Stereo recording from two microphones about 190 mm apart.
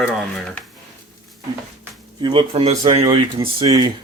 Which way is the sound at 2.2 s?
25° right (ahead or behind).